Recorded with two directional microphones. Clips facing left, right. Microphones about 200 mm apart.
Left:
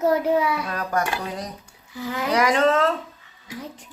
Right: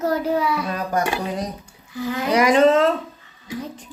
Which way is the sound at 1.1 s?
15° right (ahead or behind).